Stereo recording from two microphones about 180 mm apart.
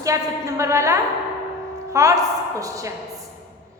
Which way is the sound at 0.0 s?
15° right (ahead or behind).